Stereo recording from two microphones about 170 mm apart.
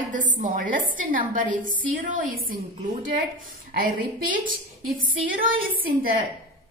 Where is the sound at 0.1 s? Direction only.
50° right (ahead or behind).